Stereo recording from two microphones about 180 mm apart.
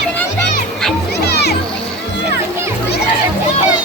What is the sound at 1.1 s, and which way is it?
Music, 65° left (ahead or behind).